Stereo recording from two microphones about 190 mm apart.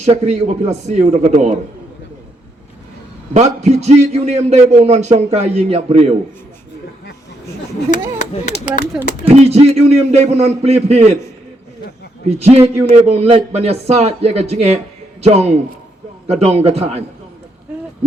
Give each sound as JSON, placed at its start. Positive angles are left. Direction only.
{"t": 0.0, "sound": "a man's voice", "side_deg": -35}
{"t": 3.3, "sound": "a man's voice", "side_deg": -35}
{"t": 8.2, "sound": "speech", "side_deg": 40}
{"t": 8.9, "sound": "speech", "side_deg": 0}
{"t": 9.3, "sound": "a man's voice", "side_deg": -35}
{"t": 12.3, "sound": "a man's voice", "side_deg": -35}